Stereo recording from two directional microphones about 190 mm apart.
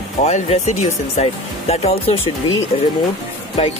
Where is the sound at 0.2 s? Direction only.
35° left (ahead or behind).